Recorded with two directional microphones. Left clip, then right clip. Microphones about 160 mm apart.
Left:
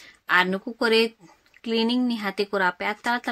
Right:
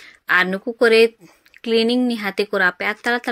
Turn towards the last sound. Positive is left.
turn(degrees=-20)  # may be behind; listen again after turning